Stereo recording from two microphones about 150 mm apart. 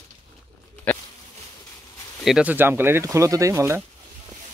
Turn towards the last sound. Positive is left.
turn(degrees=-20)  # may be behind; listen again after turning